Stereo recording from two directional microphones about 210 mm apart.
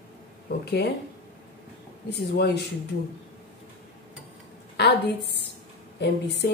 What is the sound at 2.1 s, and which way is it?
Speech, 50° left (ahead or behind).